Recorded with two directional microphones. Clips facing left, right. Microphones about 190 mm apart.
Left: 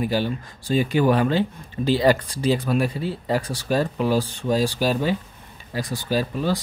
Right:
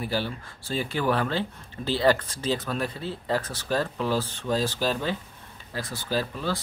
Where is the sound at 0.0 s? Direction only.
15° left (ahead or behind).